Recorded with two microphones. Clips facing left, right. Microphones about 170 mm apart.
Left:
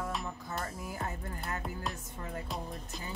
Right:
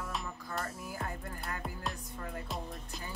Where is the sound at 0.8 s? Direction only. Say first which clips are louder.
Left 2 dB; 25° left (ahead or behind).